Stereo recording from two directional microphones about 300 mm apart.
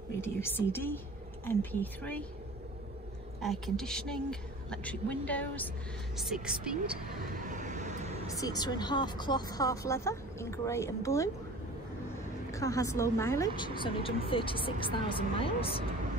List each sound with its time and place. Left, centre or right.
0.2 s speech: centre
3.3 s speech: centre
7.3 s vehicle: right
8.3 s speech: centre
12.4 s speech: centre